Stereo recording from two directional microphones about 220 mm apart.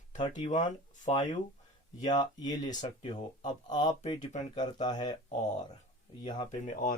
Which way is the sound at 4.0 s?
30° left (ahead or behind).